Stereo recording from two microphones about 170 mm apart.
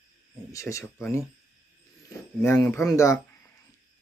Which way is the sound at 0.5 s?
15° left (ahead or behind).